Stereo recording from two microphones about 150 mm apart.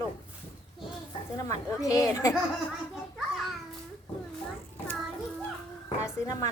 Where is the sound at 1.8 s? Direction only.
20° left (ahead or behind).